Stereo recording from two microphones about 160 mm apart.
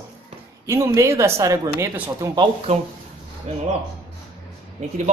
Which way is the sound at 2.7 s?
40° right (ahead or behind).